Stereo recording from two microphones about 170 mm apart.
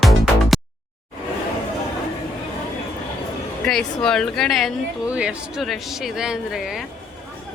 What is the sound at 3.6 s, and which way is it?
A woman's voice, 5° left (ahead or behind).